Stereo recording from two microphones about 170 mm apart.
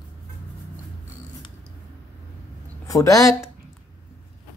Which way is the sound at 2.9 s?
20° left (ahead or behind).